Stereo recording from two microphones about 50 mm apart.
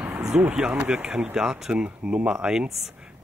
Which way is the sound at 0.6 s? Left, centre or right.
Centre.